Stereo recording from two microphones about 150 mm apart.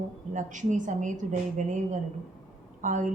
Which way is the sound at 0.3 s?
55° right (ahead or behind).